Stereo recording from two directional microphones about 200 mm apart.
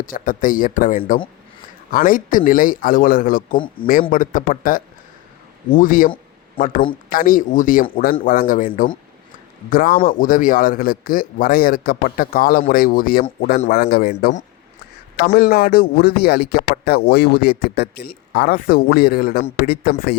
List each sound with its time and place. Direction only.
0.0 s speech: 40° left (ahead or behind)
7.1 s speech: 45° left (ahead or behind)